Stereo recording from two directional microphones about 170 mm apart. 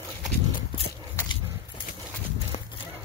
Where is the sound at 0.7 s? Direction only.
35° left (ahead or behind).